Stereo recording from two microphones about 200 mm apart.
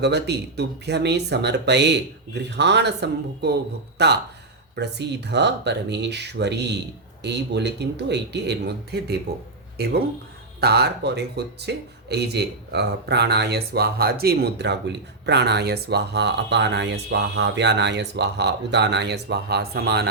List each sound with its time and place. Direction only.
0.0 s speech: 55° right (ahead or behind)